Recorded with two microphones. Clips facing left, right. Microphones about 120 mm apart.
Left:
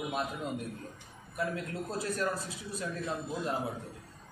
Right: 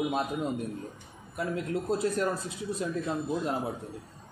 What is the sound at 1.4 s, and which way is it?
Speech, 25° right (ahead or behind).